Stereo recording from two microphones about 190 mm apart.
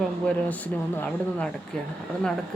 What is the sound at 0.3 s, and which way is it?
Speech, 10° left (ahead or behind).